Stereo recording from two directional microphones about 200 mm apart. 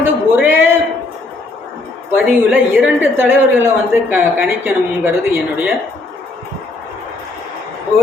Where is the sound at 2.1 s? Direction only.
10° right (ahead or behind).